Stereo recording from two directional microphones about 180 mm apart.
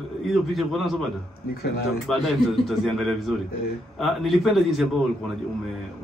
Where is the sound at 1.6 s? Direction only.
65° left (ahead or behind).